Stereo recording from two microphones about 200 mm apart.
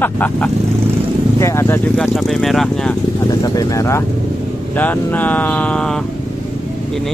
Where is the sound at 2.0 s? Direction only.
Centre (ahead or behind).